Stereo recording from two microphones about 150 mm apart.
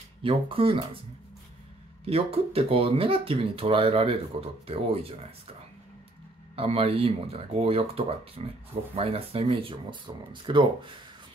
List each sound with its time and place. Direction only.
0.2 s speech: 35° right (ahead or behind)
2.0 s speech: 40° right (ahead or behind)
6.5 s speech: 40° right (ahead or behind)